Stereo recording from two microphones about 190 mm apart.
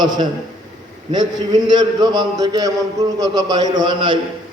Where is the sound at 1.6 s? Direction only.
20° right (ahead or behind).